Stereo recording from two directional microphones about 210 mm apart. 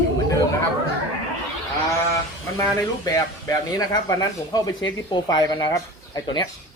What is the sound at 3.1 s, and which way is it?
Speech, 15° left (ahead or behind).